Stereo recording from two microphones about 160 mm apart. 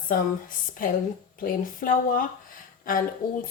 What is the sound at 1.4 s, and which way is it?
Speech, 60° left (ahead or behind).